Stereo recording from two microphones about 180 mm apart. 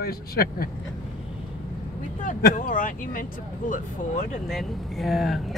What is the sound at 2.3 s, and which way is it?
Speech, 50° left (ahead or behind).